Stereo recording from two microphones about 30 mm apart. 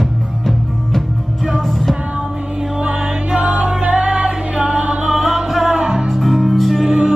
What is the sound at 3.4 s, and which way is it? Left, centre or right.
Music, right.